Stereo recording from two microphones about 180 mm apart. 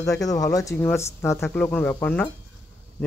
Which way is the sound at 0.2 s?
20° left (ahead or behind).